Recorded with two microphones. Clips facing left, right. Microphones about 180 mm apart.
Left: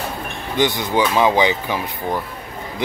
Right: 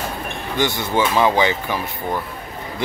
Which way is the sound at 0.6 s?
20° left (ahead or behind).